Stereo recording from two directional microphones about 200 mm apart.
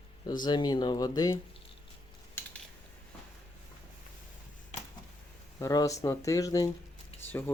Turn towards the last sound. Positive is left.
turn(degrees=10)  # may be behind; listen again after turning